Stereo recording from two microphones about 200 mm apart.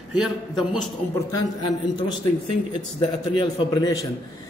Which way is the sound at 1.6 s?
20° left (ahead or behind).